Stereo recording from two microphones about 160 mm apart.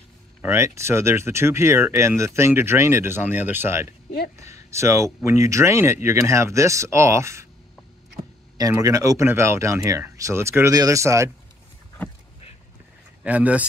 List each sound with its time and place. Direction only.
0.4 s speech: 15° right (ahead or behind)
8.5 s speech: 20° right (ahead or behind)
13.2 s speech: 10° right (ahead or behind)